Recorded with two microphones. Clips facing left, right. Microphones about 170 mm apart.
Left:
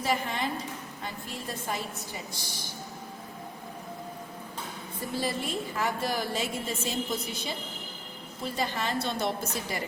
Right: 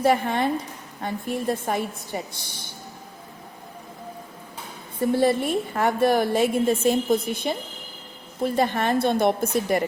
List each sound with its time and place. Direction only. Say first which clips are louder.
0.0 s a woman's voice: right 9 dB; 60° right (ahead or behind)
5.1 s a woman's voice: right 10 dB; 60° right (ahead or behind)